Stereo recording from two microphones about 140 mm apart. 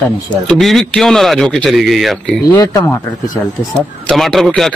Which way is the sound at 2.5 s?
25° left (ahead or behind).